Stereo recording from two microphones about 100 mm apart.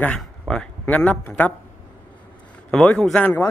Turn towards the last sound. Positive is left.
turn(degrees=10)  # may be behind; listen again after turning